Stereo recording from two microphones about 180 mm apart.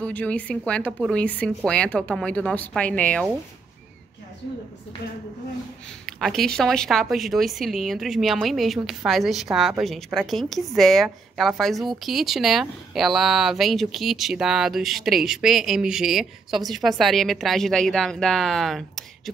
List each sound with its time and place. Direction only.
0.0 s a woman's voice: 10° left (ahead or behind)
6.0 s speech: centre (ahead or behind)